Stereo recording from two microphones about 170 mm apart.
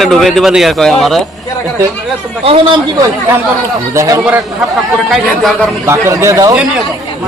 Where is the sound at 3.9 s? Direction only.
15° right (ahead or behind).